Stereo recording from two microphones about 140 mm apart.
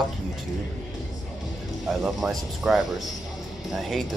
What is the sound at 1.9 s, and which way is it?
Speech, 5° right (ahead or behind).